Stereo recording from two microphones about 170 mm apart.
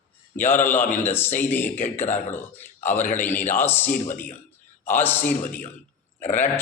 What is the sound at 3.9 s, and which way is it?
Speech, 45° left (ahead or behind).